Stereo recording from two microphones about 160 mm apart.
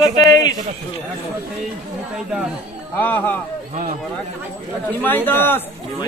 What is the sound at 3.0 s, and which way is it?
Speech, 10° left (ahead or behind).